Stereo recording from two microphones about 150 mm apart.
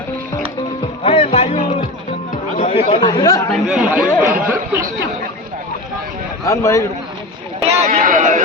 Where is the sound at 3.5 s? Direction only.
5° right (ahead or behind).